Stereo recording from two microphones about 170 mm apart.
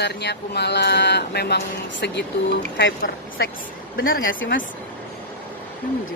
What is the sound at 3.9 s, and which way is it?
Speech, 60° left (ahead or behind).